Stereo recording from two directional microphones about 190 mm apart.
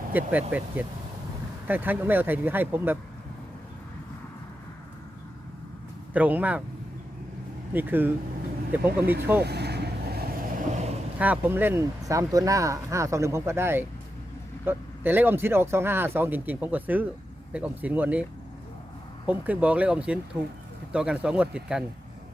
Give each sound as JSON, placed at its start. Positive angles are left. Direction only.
{"t": 0.1, "sound": "speech", "side_deg": -10}
{"t": 6.1, "sound": "speech", "side_deg": -10}
{"t": 7.7, "sound": "speech", "side_deg": -10}
{"t": 9.4, "sound": "vehicle", "side_deg": -60}
{"t": 11.2, "sound": "speech", "side_deg": -10}